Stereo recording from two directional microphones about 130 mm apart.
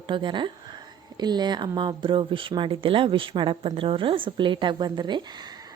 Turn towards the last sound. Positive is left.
turn(degrees=-35)  # may be behind; listen again after turning